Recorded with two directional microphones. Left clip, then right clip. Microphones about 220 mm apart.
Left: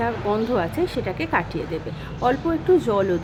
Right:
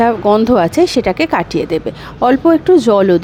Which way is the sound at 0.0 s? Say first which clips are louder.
Right 12 dB; 40° right (ahead or behind).